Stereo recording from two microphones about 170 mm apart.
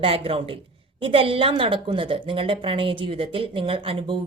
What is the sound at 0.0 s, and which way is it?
A woman's voice, 35° right (ahead or behind).